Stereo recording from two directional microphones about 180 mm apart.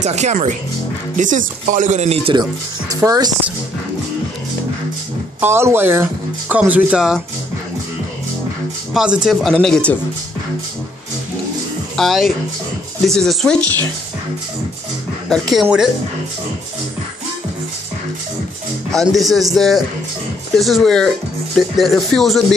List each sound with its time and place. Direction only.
0.0 s speech: 40° right (ahead or behind)
2.9 s speech: 20° right (ahead or behind)
5.4 s speech: 15° right (ahead or behind)
8.9 s speech: 5° right (ahead or behind)
12.0 s speech: centre (ahead or behind)
15.5 s speech: centre (ahead or behind)
19.1 s speech: centre (ahead or behind)